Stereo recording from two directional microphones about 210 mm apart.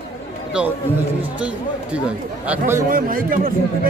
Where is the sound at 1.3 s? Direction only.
5° right (ahead or behind).